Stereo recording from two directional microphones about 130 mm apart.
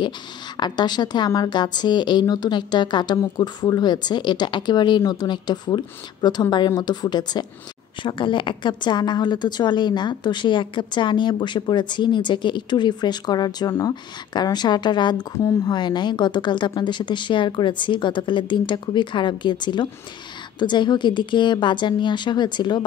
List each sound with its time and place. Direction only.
0.6 s a woman's voice: 35° left (ahead or behind)